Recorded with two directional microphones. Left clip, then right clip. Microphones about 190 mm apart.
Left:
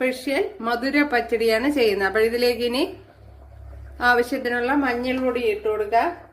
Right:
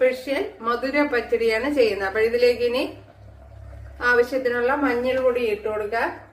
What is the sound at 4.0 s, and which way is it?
A woman's voice, 55° left (ahead or behind).